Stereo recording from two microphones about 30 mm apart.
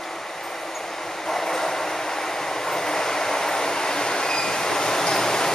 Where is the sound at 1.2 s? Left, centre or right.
Centre.